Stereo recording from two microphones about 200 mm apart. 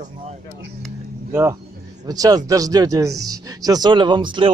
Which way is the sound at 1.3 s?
10° right (ahead or behind).